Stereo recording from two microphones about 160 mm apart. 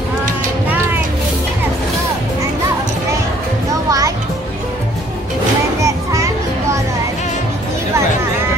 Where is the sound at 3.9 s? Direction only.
20° right (ahead or behind).